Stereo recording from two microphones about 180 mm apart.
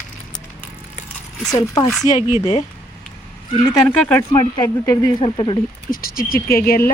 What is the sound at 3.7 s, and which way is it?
Speech, 10° left (ahead or behind).